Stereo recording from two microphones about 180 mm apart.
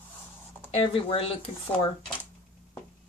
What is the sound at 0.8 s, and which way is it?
Speech, 30° left (ahead or behind).